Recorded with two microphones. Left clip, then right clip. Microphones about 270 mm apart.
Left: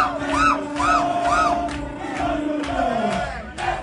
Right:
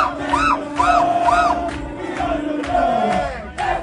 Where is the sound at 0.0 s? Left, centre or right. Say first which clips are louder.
Right 1 dB; right.